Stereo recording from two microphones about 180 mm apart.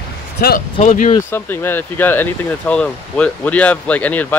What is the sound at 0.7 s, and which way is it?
Speech, 45° left (ahead or behind).